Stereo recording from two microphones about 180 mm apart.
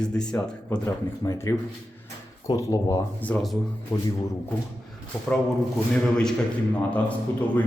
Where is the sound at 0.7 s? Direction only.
20° left (ahead or behind).